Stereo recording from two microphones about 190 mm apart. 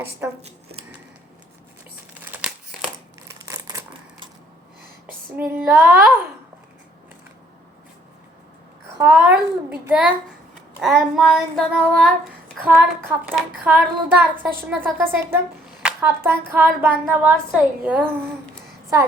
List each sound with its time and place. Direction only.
0.2 s a child's voice: 10° right (ahead or behind)
3.2 s crumpling: 15° right (ahead or behind)
5.4 s a child's voice: 10° right (ahead or behind)
9.0 s a child's voice: 10° right (ahead or behind)
10.8 s child singing: 5° right (ahead or behind)
12.6 s a child's voice: 5° right (ahead or behind)